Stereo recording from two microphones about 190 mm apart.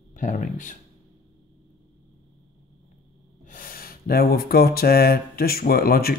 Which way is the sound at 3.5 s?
45° left (ahead or behind).